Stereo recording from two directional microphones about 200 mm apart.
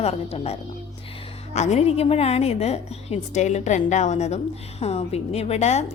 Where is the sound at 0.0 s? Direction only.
30° left (ahead or behind).